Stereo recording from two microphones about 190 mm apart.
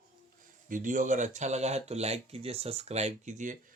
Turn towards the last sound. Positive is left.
turn(degrees=-40)  # may be behind; listen again after turning